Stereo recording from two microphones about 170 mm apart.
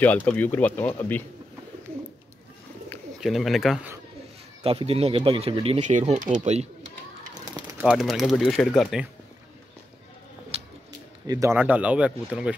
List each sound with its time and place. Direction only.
0.0 s speech: 10° left (ahead or behind)
3.2 s speech: centre (ahead or behind)
4.6 s speech: 35° right (ahead or behind)
7.7 s speech: 5° right (ahead or behind)
10.5 s a sound: 35° right (ahead or behind)
11.2 s speech: 20° right (ahead or behind)